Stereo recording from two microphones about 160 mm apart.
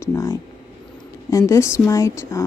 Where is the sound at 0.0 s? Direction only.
20° left (ahead or behind).